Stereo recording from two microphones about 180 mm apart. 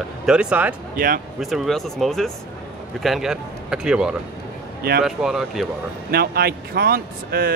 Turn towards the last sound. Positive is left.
turn(degrees=-55)  # may be behind; listen again after turning